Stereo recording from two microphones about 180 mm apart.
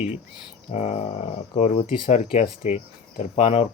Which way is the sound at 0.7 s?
40° left (ahead or behind).